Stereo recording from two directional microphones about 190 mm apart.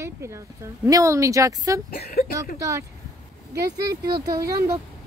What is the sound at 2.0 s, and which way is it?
Speech, 50° left (ahead or behind).